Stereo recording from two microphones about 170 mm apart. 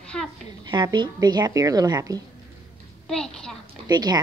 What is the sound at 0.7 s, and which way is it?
A woman's voice, 25° right (ahead or behind).